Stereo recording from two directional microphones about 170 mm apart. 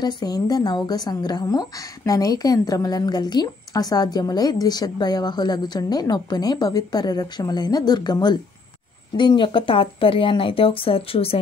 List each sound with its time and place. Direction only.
0.0 s a woman's voice: 20° left (ahead or behind)